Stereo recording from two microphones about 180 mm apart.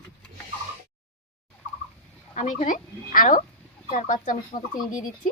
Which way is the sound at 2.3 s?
45° left (ahead or behind).